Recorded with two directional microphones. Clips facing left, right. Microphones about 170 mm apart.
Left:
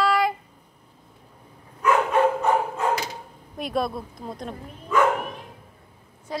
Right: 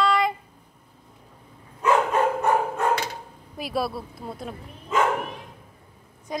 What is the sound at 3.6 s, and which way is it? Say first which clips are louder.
Speech: left 1 dB; 5° right (ahead or behind).